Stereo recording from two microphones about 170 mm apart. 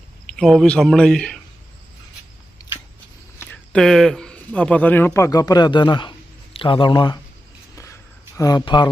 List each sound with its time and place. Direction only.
0.3 s speech: centre (ahead or behind)
3.3 s speech: 10° left (ahead or behind); by 7.2 s 25° left (ahead or behind)
8.4 s a man's voice: 25° left (ahead or behind)